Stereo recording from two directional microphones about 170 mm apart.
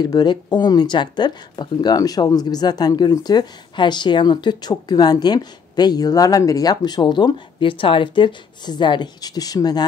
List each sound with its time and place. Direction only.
0.0 s speech: 25° left (ahead or behind)